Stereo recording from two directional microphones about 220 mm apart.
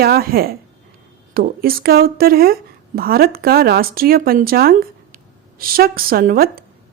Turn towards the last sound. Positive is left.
turn(degrees=-40)  # may be behind; listen again after turning